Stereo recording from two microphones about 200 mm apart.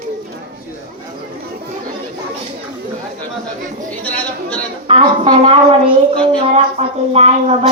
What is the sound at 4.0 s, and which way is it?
Chatter, 5° left (ahead or behind).